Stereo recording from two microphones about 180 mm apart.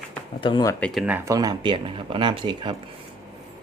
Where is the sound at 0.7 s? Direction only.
5° left (ahead or behind).